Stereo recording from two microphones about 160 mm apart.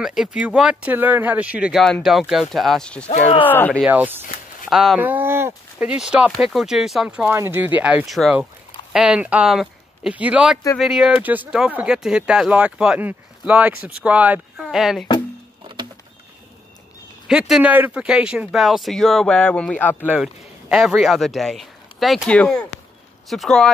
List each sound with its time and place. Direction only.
0.0 s speech: 5° right (ahead or behind)
3.1 s speech: 45° left (ahead or behind)
3.4 s speech: 10° left (ahead or behind)
3.8 s speech: 10° right (ahead or behind)
17.3 s speech: 5° right (ahead or behind); by 20.1 s 10° left (ahead or behind)
20.1 s speech: 5° right (ahead or behind)